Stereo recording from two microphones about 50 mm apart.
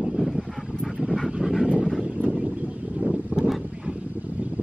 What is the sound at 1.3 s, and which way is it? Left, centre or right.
Dog, centre.